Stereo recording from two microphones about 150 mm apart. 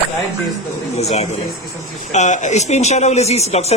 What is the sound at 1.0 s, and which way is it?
Speech, 45° left (ahead or behind).